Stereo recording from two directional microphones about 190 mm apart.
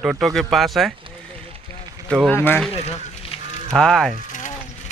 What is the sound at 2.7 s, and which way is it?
Speech, 35° left (ahead or behind).